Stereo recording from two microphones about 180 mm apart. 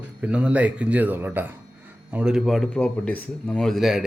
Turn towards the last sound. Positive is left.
turn(degrees=0)  # may be behind; listen again after turning